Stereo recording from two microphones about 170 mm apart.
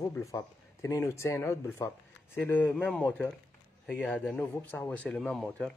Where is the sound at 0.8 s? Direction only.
15° left (ahead or behind).